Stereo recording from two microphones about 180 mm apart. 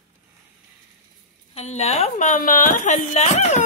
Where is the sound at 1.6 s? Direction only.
35° left (ahead or behind).